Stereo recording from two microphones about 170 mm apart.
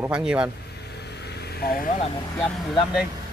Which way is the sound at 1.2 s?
70° left (ahead or behind).